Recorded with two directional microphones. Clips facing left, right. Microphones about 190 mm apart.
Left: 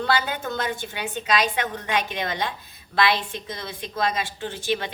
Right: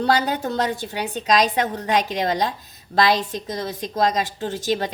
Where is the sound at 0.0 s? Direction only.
40° right (ahead or behind).